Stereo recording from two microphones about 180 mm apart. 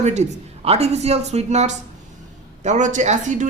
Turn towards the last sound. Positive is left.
turn(degrees=-45)  # may be behind; listen again after turning